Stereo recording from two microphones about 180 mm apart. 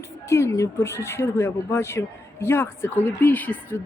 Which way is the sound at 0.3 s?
15° left (ahead or behind).